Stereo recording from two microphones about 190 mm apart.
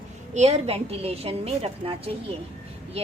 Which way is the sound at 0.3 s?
35° right (ahead or behind).